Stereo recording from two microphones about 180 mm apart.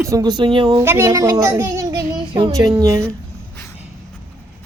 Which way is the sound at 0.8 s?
15° right (ahead or behind).